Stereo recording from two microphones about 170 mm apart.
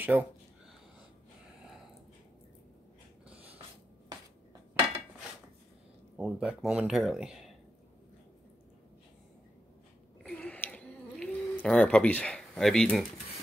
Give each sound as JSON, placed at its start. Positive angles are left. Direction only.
{"t": 0.0, "sound": "speech", "side_deg": -10}
{"t": 6.1, "sound": "speech", "side_deg": -5}
{"t": 10.2, "sound": "a sound", "side_deg": 5}